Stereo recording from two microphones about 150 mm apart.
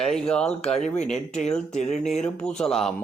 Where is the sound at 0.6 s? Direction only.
45° left (ahead or behind).